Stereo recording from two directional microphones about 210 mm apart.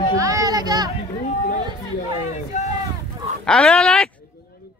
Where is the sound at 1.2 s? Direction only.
35° left (ahead or behind).